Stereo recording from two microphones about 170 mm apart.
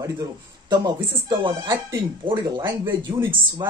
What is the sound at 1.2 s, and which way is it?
A man's voice, 25° right (ahead or behind).